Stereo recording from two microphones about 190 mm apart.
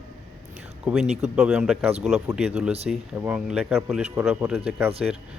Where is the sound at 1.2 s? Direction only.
5° right (ahead or behind).